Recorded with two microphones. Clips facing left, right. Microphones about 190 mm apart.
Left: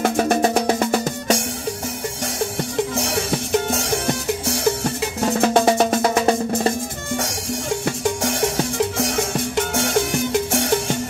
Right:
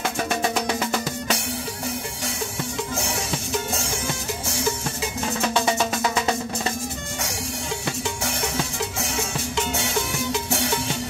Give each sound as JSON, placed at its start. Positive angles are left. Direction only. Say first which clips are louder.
{"t": 0.0, "sound": "music", "louder": "left 7 dB", "side_deg": 50}
{"t": 3.1, "sound": "music", "louder": "left 6 dB", "side_deg": 60}
{"t": 7.8, "sound": "music", "louder": "left 6 dB", "side_deg": 50}